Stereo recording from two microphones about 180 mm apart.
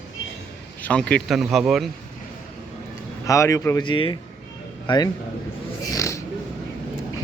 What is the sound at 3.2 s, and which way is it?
Speech, 15° left (ahead or behind).